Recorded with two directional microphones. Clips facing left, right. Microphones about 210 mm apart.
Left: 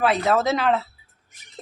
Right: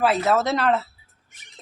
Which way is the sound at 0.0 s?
Centre (ahead or behind).